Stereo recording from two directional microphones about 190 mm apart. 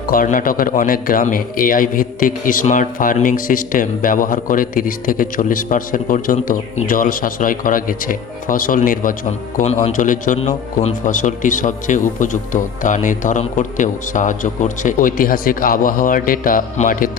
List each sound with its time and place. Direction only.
0.1 s a man's voice: 45° left (ahead or behind)